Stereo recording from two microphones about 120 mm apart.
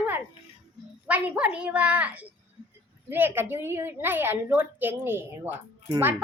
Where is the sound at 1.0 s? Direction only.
15° right (ahead or behind).